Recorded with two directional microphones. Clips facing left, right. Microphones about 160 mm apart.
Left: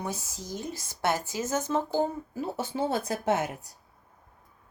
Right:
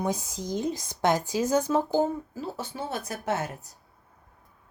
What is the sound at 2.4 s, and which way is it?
Speech, 25° left (ahead or behind).